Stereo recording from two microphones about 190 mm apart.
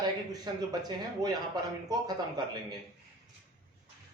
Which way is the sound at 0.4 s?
20° right (ahead or behind).